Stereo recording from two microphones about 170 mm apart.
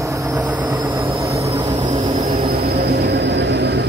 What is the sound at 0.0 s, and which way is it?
Train, 20° right (ahead or behind).